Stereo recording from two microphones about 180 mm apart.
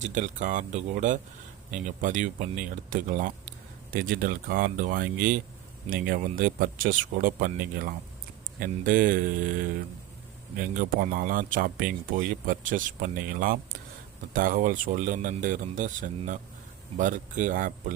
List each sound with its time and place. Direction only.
0.0 s speech: 45° right (ahead or behind)